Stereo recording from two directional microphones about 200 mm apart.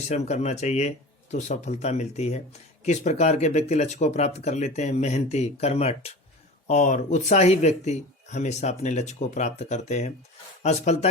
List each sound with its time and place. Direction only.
0.1 s speech: 35° left (ahead or behind)